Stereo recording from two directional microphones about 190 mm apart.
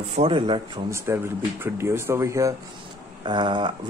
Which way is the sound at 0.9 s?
15° right (ahead or behind).